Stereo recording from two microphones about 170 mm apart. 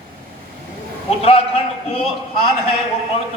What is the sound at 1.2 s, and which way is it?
A man's voice, 35° left (ahead or behind).